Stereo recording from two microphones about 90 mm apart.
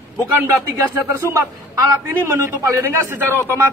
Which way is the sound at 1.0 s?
30° right (ahead or behind).